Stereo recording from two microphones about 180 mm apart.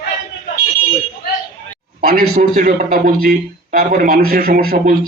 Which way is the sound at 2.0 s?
55° right (ahead or behind).